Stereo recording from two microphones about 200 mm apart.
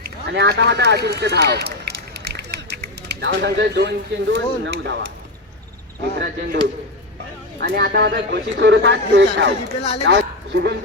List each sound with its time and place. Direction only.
0.0 s a man's voice: 55° right (ahead or behind)
6.1 s speech: 55° right (ahead or behind)
7.6 s speech: 50° right (ahead or behind)
10.1 s a sound: 60° right (ahead or behind)